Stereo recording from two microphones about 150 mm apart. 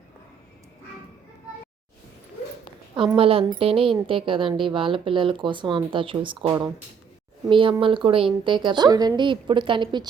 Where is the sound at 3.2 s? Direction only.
40° right (ahead or behind).